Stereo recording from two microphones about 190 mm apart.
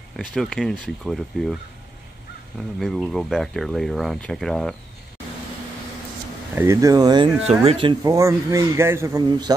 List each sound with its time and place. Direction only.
0.2 s speech: centre (ahead or behind)
2.8 s speech: centre (ahead or behind)
6.5 s speech: 15° right (ahead or behind)